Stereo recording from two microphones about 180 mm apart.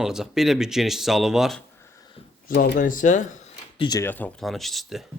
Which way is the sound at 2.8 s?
45° left (ahead or behind).